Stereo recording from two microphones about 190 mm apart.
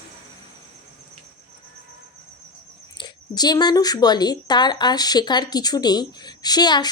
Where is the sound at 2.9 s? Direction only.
20° left (ahead or behind).